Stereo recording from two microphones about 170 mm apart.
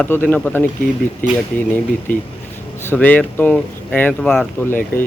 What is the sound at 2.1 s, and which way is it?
Speech, 55° left (ahead or behind).